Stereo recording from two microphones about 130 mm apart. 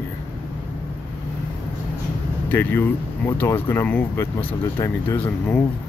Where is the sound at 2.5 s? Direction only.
15° left (ahead or behind).